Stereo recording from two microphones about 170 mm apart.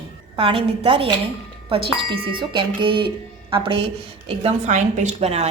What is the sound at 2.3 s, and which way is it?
A woman's voice, 30° right (ahead or behind).